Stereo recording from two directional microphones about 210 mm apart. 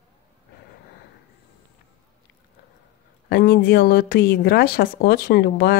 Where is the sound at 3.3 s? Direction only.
45° left (ahead or behind).